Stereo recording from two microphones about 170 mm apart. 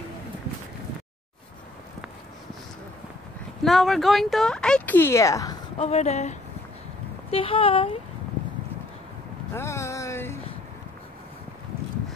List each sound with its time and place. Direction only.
3.6 s speech: centre (ahead or behind); by 5.6 s 20° left (ahead or behind)
5.8 s speech: 40° left (ahead or behind)
9.5 s a sound: 15° left (ahead or behind)